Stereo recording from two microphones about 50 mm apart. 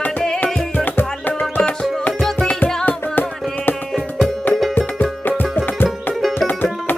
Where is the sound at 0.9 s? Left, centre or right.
Left.